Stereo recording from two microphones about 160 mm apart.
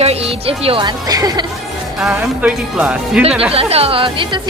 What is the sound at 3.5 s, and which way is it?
Speech, 35° right (ahead or behind).